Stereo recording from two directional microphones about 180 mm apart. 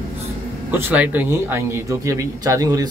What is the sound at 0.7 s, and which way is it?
Speech, 10° right (ahead or behind).